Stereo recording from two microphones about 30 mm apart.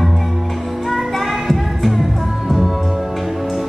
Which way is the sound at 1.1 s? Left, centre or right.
Centre.